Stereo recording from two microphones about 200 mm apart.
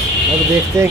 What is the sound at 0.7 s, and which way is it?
Speech, 15° right (ahead or behind).